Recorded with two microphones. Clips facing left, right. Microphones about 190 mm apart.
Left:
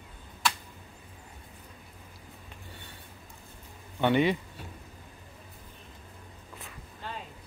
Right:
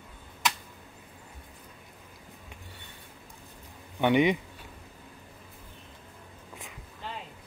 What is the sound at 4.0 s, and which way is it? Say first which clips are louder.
Speech: right 1 dB; 15° right (ahead or behind).